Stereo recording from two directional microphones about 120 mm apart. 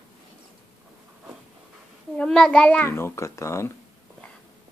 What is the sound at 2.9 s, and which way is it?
Speech, 20° left (ahead or behind).